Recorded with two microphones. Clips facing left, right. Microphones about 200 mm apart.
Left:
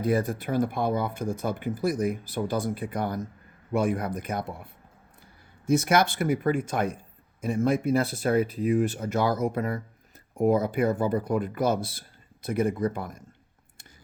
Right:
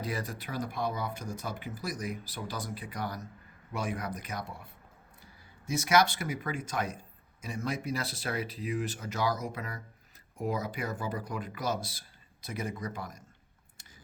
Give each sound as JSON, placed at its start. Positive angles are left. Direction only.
{"t": 0.0, "sound": "speech", "side_deg": 50}